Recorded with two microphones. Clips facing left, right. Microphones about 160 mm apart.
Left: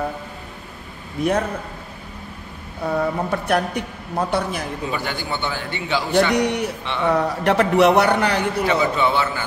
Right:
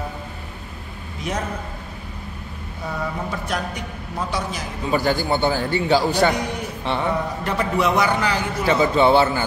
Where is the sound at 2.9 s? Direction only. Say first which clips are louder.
Left 6 dB; 60° left (ahead or behind).